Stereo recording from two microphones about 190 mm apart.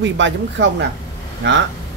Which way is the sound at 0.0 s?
70° right (ahead or behind).